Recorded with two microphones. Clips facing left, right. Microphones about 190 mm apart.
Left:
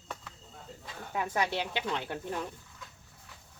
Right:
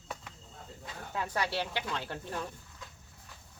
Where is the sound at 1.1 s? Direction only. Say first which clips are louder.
Left 2 dB; 15° left (ahead or behind).